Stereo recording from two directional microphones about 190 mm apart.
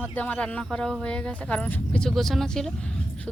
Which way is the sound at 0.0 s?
10° left (ahead or behind).